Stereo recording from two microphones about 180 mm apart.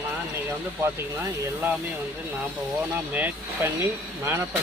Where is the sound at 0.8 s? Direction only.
15° right (ahead or behind).